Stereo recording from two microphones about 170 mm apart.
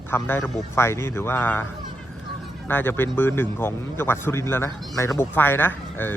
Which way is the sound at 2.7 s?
10° left (ahead or behind).